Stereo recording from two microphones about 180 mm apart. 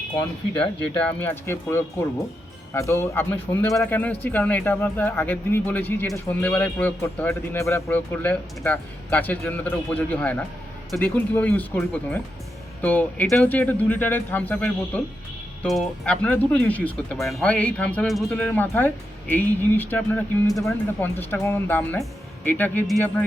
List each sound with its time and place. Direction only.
1.2 s a man's voice: 15° left (ahead or behind)